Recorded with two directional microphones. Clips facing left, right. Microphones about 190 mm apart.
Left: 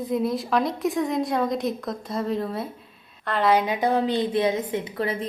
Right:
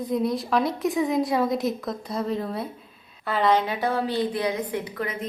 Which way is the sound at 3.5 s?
15° left (ahead or behind).